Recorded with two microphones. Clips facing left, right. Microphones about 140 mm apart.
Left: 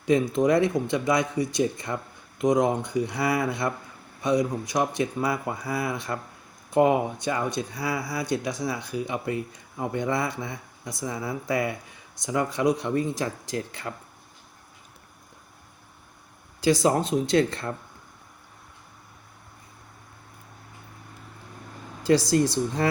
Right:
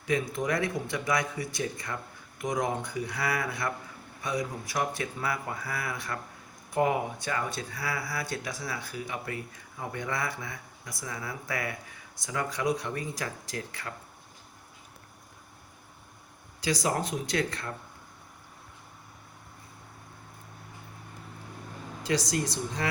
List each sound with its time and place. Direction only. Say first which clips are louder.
0.0 s speech: left 8 dB; 25° left (ahead or behind)
16.8 s speech: left 7 dB; 25° left (ahead or behind)
22.0 s speech: left 9 dB; 30° left (ahead or behind)